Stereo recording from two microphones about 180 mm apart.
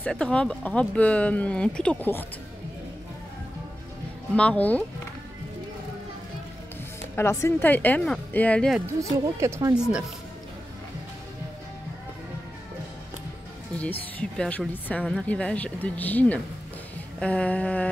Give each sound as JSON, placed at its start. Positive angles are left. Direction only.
{"t": 0.0, "sound": "speech", "side_deg": 5}
{"t": 4.4, "sound": "speech", "side_deg": 10}
{"t": 7.2, "sound": "speech", "side_deg": 15}
{"t": 9.1, "sound": "speech", "side_deg": -20}
{"t": 14.1, "sound": "speech", "side_deg": 5}